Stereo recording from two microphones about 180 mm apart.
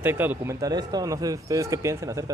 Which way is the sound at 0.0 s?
10° right (ahead or behind).